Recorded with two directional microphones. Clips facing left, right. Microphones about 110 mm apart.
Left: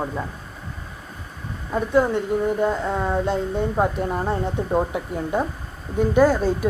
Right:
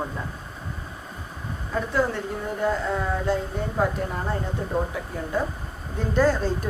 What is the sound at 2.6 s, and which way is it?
Speech, 20° left (ahead or behind).